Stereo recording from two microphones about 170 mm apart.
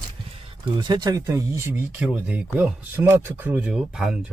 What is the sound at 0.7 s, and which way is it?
Speech, 25° right (ahead or behind).